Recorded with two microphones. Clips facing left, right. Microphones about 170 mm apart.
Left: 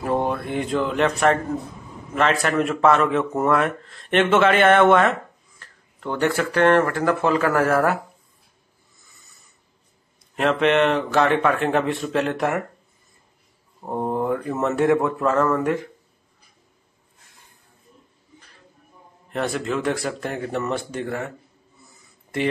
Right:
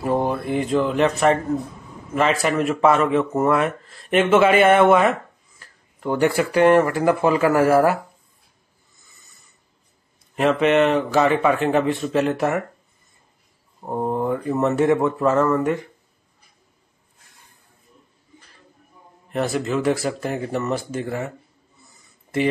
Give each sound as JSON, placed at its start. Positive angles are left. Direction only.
{"t": 0.0, "sound": "speech", "side_deg": -5}
{"t": 10.3, "sound": "speech", "side_deg": 0}
{"t": 13.8, "sound": "speech", "side_deg": 0}
{"t": 19.3, "sound": "speech", "side_deg": -5}